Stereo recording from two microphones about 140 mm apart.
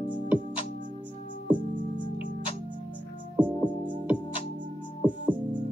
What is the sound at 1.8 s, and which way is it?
Music, 70° right (ahead or behind).